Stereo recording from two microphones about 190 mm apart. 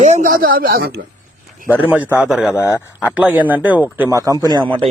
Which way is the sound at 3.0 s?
5° right (ahead or behind).